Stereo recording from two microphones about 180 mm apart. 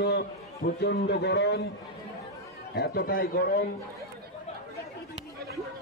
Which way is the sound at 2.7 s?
60° left (ahead or behind).